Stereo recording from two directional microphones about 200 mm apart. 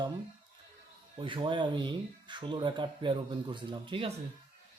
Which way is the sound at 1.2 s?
25° right (ahead or behind).